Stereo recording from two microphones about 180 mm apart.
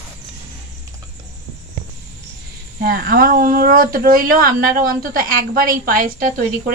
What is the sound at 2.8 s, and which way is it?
A woman's voice, 55° right (ahead or behind).